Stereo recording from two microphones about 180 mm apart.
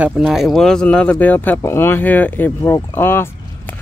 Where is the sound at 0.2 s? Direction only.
Centre (ahead or behind).